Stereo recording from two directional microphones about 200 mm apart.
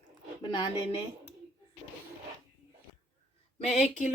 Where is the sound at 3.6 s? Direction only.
40° left (ahead or behind).